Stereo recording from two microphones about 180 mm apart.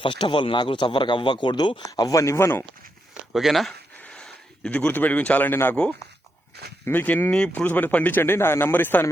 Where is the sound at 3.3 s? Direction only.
Centre (ahead or behind).